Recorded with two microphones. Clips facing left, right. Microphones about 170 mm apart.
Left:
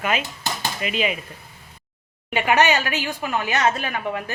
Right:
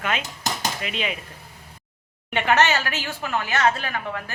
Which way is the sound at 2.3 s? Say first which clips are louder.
Left 1 dB; 10° left (ahead or behind).